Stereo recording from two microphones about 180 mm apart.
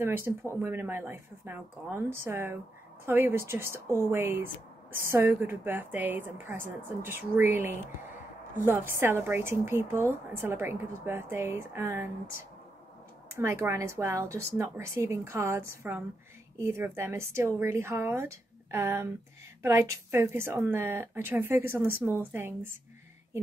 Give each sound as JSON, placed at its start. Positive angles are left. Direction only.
{"t": 0.0, "sound": "a woman's voice", "side_deg": -10}
{"t": 8.9, "sound": "a woman's voice", "side_deg": -10}
{"t": 13.4, "sound": "a woman's voice", "side_deg": -15}